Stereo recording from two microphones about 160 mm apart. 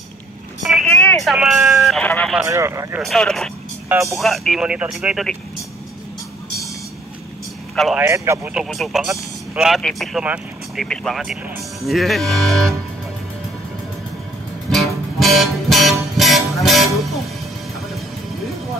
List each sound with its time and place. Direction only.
0.6 s vehicle: centre (ahead or behind)
2.4 s speech: 20° right (ahead or behind)
3.0 s speech: centre (ahead or behind)
7.7 s a man's voice: centre (ahead or behind)
8.0 s speech: 20° right (ahead or behind)
8.5 s speech: centre (ahead or behind)
14.7 s music: centre (ahead or behind)